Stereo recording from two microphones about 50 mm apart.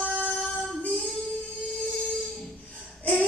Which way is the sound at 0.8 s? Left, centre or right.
Left.